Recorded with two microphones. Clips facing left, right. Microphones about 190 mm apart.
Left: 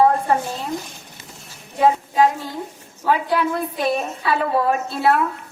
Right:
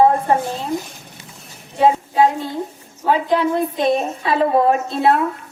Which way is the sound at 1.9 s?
20° right (ahead or behind).